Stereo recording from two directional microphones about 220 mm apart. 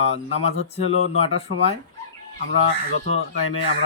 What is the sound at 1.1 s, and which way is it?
Speech, 25° left (ahead or behind).